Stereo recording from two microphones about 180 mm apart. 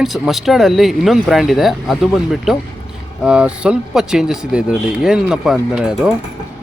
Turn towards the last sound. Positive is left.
turn(degrees=-5)  # may be behind; listen again after turning